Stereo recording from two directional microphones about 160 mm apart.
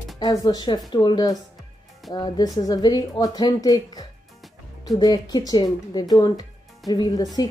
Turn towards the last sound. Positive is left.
turn(degrees=25)  # may be behind; listen again after turning